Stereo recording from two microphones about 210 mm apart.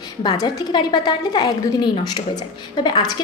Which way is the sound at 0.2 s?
20° left (ahead or behind).